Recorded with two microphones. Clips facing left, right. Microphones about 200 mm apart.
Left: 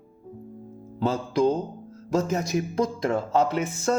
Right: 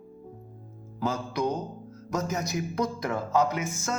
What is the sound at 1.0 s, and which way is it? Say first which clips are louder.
Speech: left 6 dB; 30° left (ahead or behind).